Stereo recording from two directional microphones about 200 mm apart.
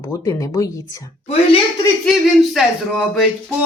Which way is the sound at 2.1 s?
Centre (ahead or behind).